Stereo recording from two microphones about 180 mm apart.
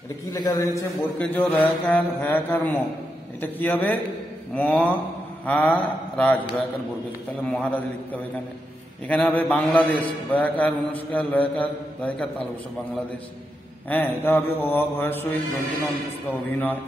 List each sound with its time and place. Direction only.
0.3 s a man's voice: 20° left (ahead or behind)
7.4 s a man's voice: 10° left (ahead or behind)
13.8 s a man's voice: 10° left (ahead or behind)
16.3 s a man's voice: 10° left (ahead or behind)